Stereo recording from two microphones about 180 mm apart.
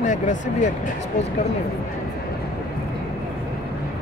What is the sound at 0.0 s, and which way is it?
Speech, 45° left (ahead or behind).